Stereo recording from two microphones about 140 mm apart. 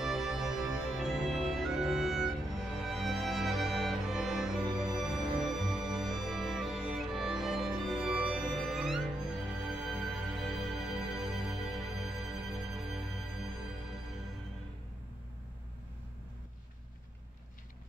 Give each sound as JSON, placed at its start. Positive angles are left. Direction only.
{"t": 0.0, "sound": "music", "side_deg": -5}